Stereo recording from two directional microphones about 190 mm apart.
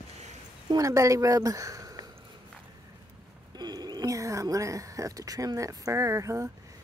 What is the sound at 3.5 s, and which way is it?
Speech, 20° right (ahead or behind).